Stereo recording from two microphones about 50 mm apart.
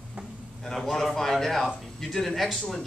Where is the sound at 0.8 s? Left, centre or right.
Centre.